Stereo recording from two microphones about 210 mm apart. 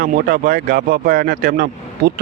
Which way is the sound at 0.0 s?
45° right (ahead or behind).